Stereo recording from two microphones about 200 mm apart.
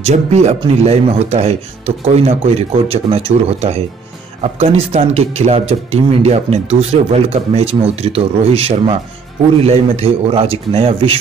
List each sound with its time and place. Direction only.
0.0 s speech: 35° right (ahead or behind)